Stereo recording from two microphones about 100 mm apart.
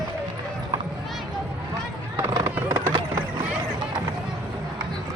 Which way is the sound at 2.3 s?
30° right (ahead or behind).